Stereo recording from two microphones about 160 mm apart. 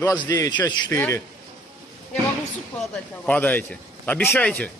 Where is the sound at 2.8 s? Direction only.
5° left (ahead or behind).